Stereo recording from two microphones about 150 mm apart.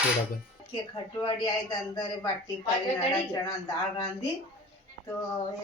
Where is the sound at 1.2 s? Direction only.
30° left (ahead or behind).